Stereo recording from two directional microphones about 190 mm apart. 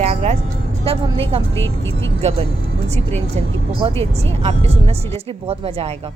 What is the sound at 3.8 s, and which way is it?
Speech, 25° right (ahead or behind).